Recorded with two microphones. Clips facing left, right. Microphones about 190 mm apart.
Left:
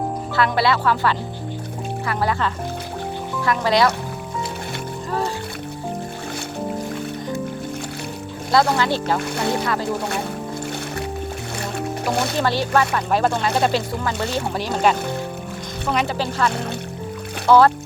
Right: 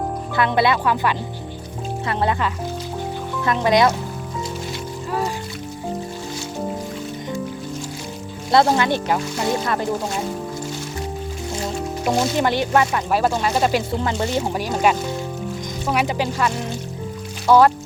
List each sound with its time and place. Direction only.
0.3 s speech: 20° right (ahead or behind)
3.4 s speech: 20° right (ahead or behind)
8.8 s speech: 15° right (ahead or behind)
9.3 s speech: 60° left (ahead or behind)
11.5 s music: 65° left (ahead or behind)
12.4 s speech: 20° right (ahead or behind)
12.9 s speech: 5° right (ahead or behind)
14.0 s speech: 25° right (ahead or behind)
14.5 s speech: 10° right (ahead or behind)
16.5 s speech: 60° left (ahead or behind)
17.4 s speech: 15° right (ahead or behind)